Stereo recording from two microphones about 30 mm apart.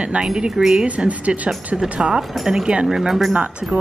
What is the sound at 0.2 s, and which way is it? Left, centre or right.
Speech, right.